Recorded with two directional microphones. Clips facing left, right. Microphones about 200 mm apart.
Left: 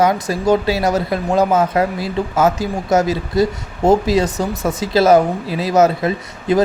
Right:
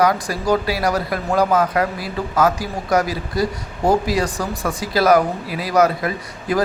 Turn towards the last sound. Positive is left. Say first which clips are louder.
# left 5 dB
turn(degrees=25)  # may be behind; listen again after turning